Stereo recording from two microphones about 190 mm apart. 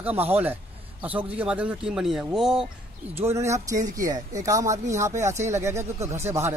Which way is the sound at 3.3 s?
15° right (ahead or behind).